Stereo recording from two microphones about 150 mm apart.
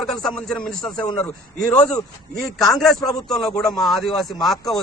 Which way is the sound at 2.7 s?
Centre (ahead or behind).